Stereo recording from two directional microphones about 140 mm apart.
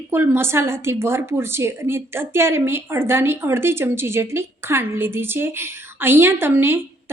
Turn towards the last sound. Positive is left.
turn(degrees=-15)  # may be behind; listen again after turning